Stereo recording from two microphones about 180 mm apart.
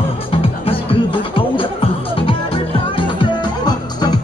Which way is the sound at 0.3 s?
30° left (ahead or behind).